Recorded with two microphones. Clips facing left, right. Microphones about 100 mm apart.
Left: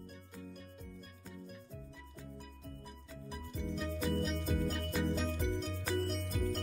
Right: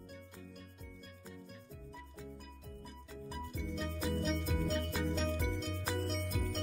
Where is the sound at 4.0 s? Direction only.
Centre (ahead or behind).